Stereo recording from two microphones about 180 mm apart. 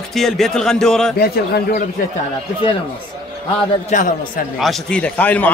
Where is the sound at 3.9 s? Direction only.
45° left (ahead or behind).